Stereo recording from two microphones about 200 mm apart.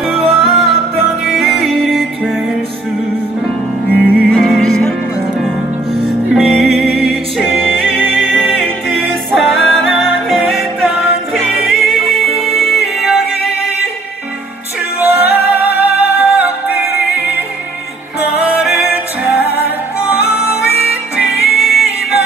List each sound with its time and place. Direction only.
0.2 s music: centre (ahead or behind)
4.0 s music: 5° left (ahead or behind)
6.0 s music: centre (ahead or behind)
9.3 s music: centre (ahead or behind)
15.0 s music: 10° right (ahead or behind)
18.2 s music: 5° right (ahead or behind)
21.4 s music: 50° left (ahead or behind)